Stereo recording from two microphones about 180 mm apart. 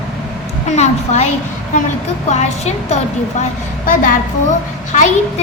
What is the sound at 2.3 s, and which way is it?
A child's voice, 40° left (ahead or behind).